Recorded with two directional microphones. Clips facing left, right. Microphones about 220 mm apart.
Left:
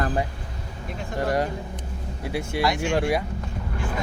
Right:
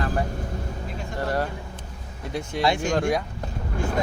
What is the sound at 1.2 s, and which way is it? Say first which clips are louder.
Speech: left 2 dB; 15° left (ahead or behind).